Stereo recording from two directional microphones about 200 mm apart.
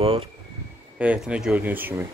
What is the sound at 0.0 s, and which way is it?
Speech, 30° right (ahead or behind).